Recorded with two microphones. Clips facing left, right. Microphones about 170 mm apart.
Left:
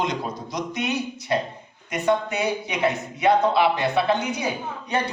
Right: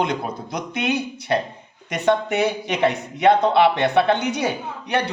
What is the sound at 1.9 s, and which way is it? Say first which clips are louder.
A man's voice: right 3 dB; 75° right (ahead or behind).